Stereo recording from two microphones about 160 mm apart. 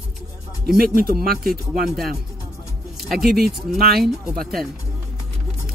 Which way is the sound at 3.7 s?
75° right (ahead or behind).